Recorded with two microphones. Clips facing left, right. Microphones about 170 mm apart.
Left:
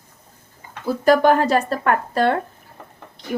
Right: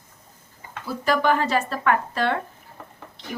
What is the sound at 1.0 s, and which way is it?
Speech, 45° left (ahead or behind).